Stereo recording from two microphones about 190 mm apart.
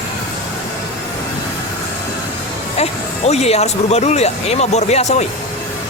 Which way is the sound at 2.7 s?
35° left (ahead or behind).